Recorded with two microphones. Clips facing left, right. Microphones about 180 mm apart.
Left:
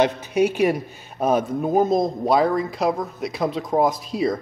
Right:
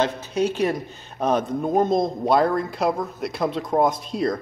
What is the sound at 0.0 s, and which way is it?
A man's voice, 15° left (ahead or behind).